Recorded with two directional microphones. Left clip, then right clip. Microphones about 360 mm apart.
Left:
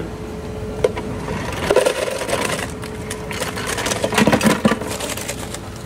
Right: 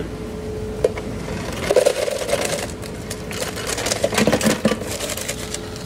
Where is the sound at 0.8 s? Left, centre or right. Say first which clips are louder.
Left 2 dB; left.